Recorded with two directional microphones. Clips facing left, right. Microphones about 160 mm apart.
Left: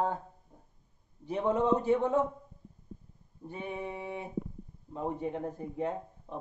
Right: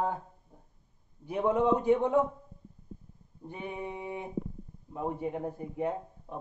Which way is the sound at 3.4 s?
15° right (ahead or behind).